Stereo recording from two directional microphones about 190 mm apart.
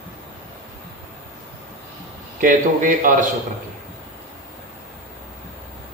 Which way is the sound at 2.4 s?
45° right (ahead or behind).